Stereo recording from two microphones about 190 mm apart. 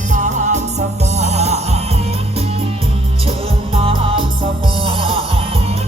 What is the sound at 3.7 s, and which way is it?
Music, 30° right (ahead or behind).